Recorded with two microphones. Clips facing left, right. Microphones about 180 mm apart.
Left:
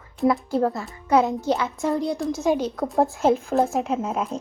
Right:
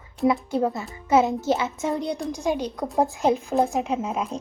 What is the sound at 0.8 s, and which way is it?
Speech, 20° right (ahead or behind).